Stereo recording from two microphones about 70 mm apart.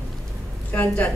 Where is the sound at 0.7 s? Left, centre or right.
Left.